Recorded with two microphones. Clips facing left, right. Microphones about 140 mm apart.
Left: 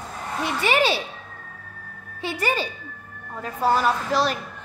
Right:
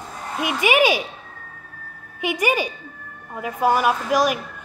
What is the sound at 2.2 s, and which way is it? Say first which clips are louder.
Speech: right 4 dB; 15° right (ahead or behind).